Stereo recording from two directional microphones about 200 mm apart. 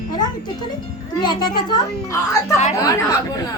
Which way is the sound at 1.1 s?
20° left (ahead or behind).